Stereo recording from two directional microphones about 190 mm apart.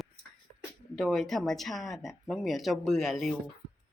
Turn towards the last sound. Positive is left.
turn(degrees=0)  # may be behind; listen again after turning